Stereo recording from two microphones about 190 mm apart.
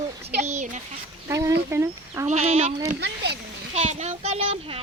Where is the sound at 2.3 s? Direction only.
35° right (ahead or behind).